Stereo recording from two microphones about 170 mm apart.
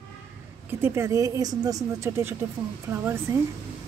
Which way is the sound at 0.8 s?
15° right (ahead or behind).